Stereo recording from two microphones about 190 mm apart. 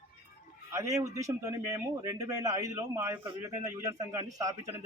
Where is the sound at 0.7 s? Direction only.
15° right (ahead or behind).